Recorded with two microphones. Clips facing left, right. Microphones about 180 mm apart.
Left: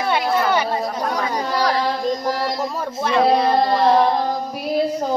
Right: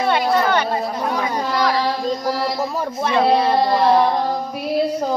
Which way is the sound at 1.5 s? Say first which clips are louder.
Right 1 dB; 35° left (ahead or behind).